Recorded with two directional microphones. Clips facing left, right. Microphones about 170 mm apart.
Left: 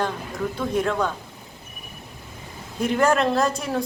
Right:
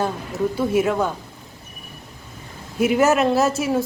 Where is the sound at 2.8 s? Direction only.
5° right (ahead or behind).